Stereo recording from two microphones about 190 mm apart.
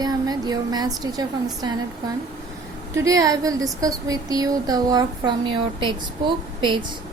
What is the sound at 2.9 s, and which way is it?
A woman's voice, 15° right (ahead or behind).